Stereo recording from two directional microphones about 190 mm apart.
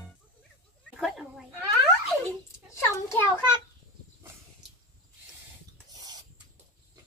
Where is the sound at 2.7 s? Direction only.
15° left (ahead or behind).